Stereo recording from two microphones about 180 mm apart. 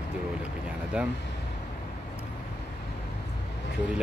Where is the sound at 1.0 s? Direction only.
5° right (ahead or behind).